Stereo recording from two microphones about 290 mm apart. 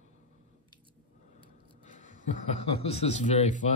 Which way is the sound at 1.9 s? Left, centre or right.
Left.